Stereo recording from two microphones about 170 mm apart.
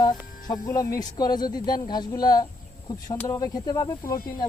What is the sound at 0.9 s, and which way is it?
Speech, 25° left (ahead or behind).